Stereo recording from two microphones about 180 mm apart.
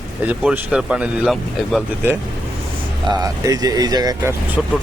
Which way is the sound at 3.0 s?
20° right (ahead or behind).